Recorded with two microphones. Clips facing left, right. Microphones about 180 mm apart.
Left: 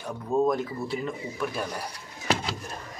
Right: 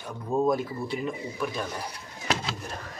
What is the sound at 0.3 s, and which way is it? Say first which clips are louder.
Speech: even; 5° right (ahead or behind).